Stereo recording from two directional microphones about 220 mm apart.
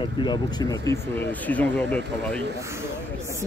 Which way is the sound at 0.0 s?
20° left (ahead or behind).